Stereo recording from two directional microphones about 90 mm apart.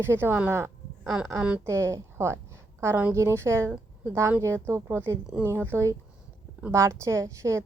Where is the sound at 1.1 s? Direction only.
15° right (ahead or behind).